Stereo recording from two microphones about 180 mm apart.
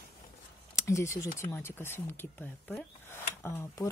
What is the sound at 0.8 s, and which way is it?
Speech, 15° left (ahead or behind).